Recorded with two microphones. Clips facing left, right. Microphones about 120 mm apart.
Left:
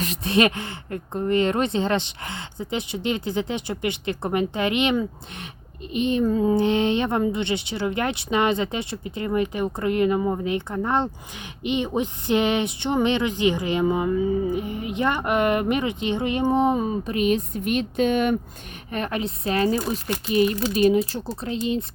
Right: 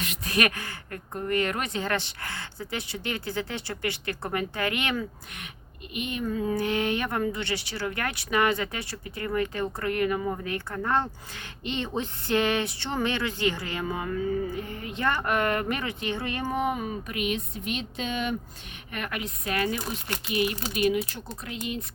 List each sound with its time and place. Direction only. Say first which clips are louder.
0.0 s speech: left 7 dB; 30° left (ahead or behind); by 18.3 s 55° left (ahead or behind)
18.9 s speech: left 7 dB; 30° left (ahead or behind)